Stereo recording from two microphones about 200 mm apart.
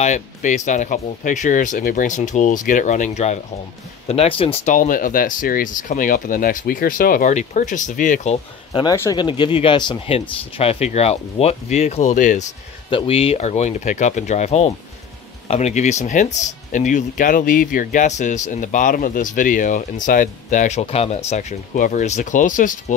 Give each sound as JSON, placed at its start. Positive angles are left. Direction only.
{"t": 0.0, "sound": "speech", "side_deg": 35}
{"t": 8.7, "sound": "speech", "side_deg": 15}